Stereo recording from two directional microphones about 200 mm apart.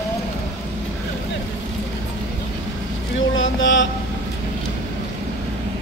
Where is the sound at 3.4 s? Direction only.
70° left (ahead or behind).